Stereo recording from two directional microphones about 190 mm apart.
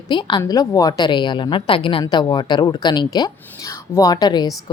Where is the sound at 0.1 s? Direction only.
25° left (ahead or behind).